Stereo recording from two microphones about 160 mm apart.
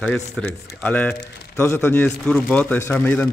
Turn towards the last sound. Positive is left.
turn(degrees=10)  # may be behind; listen again after turning